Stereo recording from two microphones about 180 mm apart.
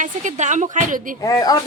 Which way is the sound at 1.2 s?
20° left (ahead or behind).